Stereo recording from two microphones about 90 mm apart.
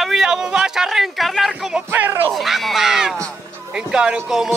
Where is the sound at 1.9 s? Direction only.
25° right (ahead or behind).